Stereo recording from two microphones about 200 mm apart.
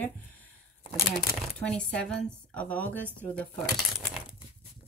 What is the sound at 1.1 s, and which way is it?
Speech, 5° left (ahead or behind).